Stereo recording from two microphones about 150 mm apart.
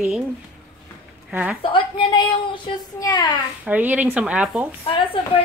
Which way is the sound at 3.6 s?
10° right (ahead or behind).